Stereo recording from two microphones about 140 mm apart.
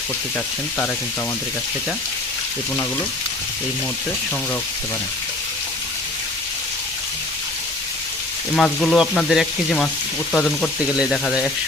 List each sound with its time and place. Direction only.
8.5 s speech: 5° left (ahead or behind)
10.8 s speech: 5° right (ahead or behind)